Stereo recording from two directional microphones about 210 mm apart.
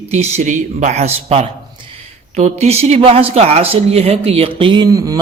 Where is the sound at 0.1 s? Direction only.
30° right (ahead or behind).